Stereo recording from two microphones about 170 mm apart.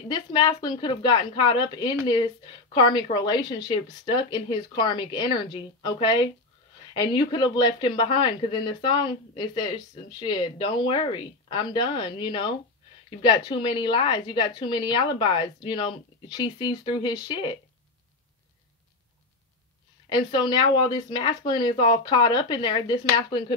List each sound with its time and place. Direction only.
0.1 s speech: 25° left (ahead or behind)
20.1 s speech: 25° left (ahead or behind)